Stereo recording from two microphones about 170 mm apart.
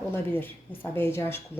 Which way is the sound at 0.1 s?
10° left (ahead or behind).